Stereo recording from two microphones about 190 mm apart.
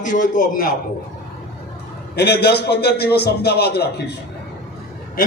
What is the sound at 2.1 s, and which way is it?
A man's voice, 60° left (ahead or behind).